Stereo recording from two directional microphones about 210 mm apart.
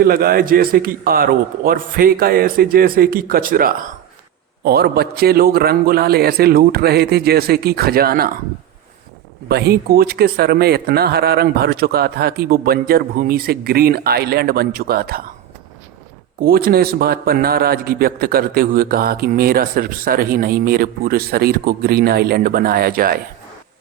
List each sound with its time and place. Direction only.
0.0 s a man's voice: 45° right (ahead or behind)
9.5 s a man's voice: 50° right (ahead or behind)
16.4 s a man's voice: 45° right (ahead or behind)